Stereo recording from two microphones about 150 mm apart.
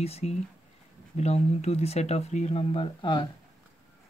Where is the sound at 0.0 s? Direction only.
45° left (ahead or behind).